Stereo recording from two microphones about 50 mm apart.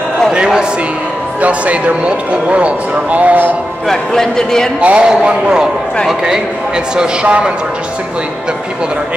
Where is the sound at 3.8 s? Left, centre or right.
Centre.